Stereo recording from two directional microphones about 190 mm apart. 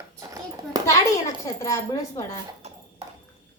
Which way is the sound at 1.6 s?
15° left (ahead or behind).